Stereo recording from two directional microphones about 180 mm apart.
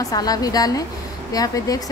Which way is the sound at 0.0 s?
20° left (ahead or behind).